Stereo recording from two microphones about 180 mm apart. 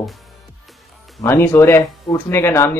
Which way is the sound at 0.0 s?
Centre (ahead or behind).